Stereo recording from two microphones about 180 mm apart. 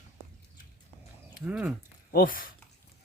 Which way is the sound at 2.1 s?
55° left (ahead or behind).